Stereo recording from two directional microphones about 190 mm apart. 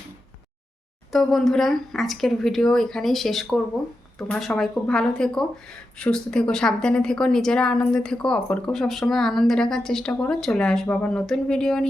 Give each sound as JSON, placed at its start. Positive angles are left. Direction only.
{"t": 1.1, "sound": "speech", "side_deg": 0}